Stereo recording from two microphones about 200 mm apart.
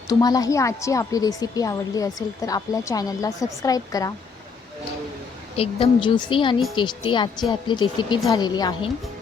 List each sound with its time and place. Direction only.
0.1 s a woman's voice: 20° left (ahead or behind)
5.5 s a woman's voice: 25° left (ahead or behind)